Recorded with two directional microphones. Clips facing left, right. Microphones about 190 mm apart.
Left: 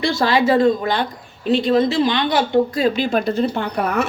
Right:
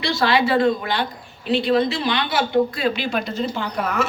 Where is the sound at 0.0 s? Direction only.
45° left (ahead or behind).